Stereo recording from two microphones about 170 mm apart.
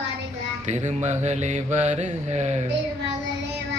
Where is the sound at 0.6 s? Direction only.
45° right (ahead or behind).